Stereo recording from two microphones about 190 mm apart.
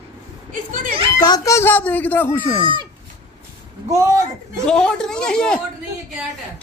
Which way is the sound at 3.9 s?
15° right (ahead or behind).